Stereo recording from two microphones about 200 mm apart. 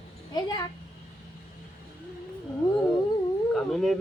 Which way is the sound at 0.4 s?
20° left (ahead or behind).